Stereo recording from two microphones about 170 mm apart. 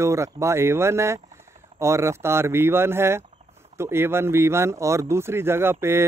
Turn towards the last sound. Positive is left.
turn(degrees=-15)  # may be behind; listen again after turning